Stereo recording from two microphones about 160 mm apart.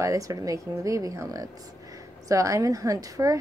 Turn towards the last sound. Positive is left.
turn(degrees=-20)  # may be behind; listen again after turning